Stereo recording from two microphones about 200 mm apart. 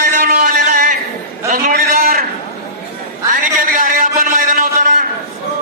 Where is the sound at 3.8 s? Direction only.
45° right (ahead or behind).